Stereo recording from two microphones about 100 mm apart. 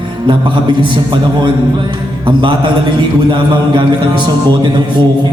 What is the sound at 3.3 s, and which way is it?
A man's voice, 55° right (ahead or behind).